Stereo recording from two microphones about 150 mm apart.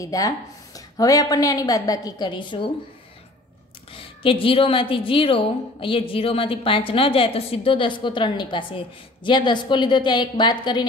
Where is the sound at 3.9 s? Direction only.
35° left (ahead or behind).